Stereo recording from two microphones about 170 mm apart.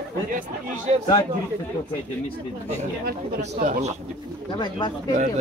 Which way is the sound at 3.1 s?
65° right (ahead or behind).